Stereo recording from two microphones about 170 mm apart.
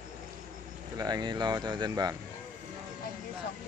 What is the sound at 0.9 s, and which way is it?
Speech, 25° right (ahead or behind).